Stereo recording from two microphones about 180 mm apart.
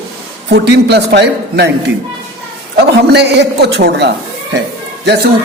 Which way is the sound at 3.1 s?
70° right (ahead or behind).